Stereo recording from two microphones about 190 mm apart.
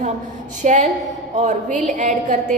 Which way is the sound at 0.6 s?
40° right (ahead or behind).